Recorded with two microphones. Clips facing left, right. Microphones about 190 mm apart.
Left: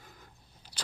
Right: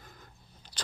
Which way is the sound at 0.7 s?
70° left (ahead or behind).